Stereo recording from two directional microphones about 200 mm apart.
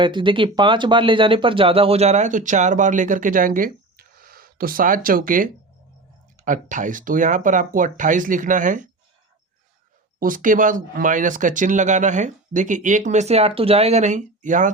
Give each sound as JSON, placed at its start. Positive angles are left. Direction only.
{"t": 0.0, "sound": "speech", "side_deg": -25}
{"t": 10.2, "sound": "speech", "side_deg": -45}